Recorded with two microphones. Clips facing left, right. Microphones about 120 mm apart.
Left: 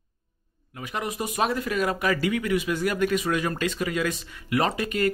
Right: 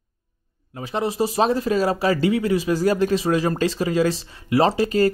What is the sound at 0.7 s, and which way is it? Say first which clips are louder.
Speech: right 8 dB; 30° right (ahead or behind).